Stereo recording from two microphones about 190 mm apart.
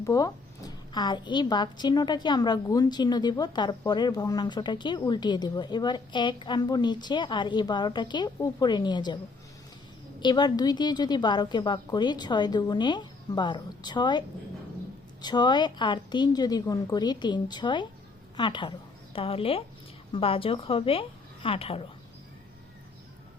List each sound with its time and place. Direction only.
0.0 s a woman's voice: 20° left (ahead or behind)
10.2 s a woman's voice: 25° left (ahead or behind)